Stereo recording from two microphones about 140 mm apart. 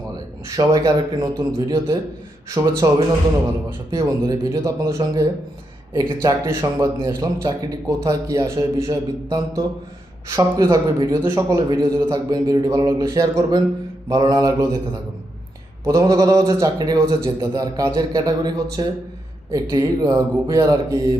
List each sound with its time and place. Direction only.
0.5 s a man's voice: 25° right (ahead or behind)
6.2 s a man's voice: 20° right (ahead or behind)
15.9 s a man's voice: 25° right (ahead or behind)